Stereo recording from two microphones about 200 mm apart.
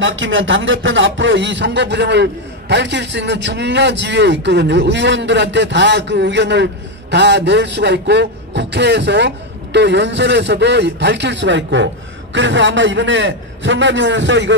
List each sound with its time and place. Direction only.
0.0 s a man's voice: 75° right (ahead or behind)